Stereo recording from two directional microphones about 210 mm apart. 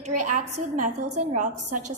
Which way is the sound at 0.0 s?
35° right (ahead or behind).